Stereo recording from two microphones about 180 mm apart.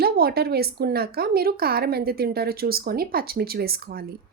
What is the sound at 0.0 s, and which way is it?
Speech, 60° right (ahead or behind).